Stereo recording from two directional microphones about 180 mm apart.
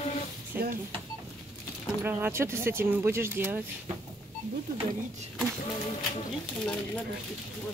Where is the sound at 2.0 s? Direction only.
15° right (ahead or behind).